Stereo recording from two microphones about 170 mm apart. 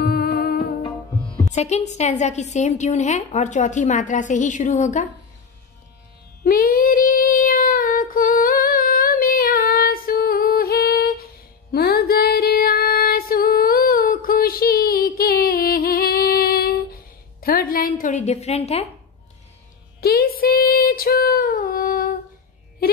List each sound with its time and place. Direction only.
0.0 s music: 65° left (ahead or behind)
0.8 s music: 30° left (ahead or behind)
1.5 s a woman's voice: 40° left (ahead or behind)
6.4 s child singing: 55° left (ahead or behind)
11.7 s music: 65° left (ahead or behind); by 18.9 s 40° left (ahead or behind)
20.0 s child singing: 65° left (ahead or behind)